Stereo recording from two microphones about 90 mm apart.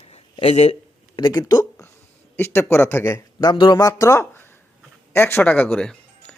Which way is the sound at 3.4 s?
60° left (ahead or behind).